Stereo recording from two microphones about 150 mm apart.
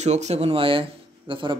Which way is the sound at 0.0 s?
50° right (ahead or behind).